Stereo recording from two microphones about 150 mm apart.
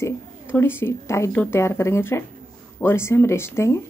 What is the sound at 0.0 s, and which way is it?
Speech, 15° left (ahead or behind).